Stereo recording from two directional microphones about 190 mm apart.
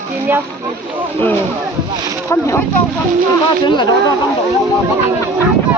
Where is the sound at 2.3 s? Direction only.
15° left (ahead or behind).